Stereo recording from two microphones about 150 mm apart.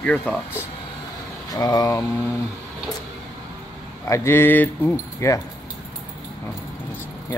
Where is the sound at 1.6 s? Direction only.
25° left (ahead or behind).